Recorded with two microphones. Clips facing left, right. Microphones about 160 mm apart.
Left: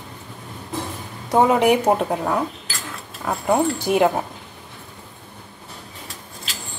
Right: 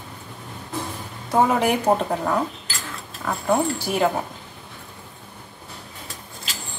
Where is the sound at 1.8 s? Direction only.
10° left (ahead or behind).